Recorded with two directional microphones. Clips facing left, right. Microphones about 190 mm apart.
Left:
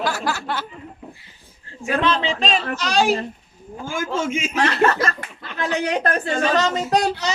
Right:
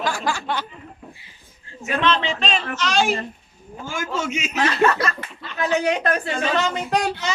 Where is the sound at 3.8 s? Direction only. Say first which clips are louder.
Left 3 dB; 50° left (ahead or behind).